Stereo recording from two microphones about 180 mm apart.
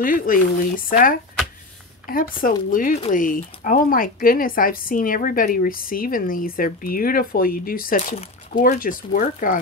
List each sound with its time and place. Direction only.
0.0 s speech: 50° left (ahead or behind)